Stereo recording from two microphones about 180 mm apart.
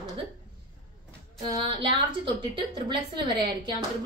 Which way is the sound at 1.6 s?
30° right (ahead or behind).